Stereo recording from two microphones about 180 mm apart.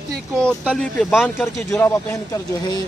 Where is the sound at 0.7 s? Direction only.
Centre (ahead or behind).